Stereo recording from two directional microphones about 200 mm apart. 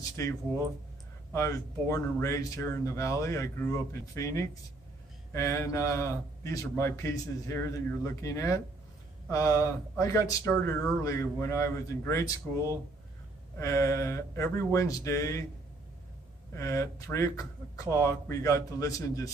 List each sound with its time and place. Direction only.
0.2 s speech: 15° left (ahead or behind)
13.6 s speech: 15° left (ahead or behind)
16.5 s speech: 15° left (ahead or behind)